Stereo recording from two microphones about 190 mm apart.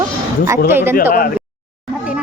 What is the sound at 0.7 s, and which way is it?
Speech, 10° right (ahead or behind).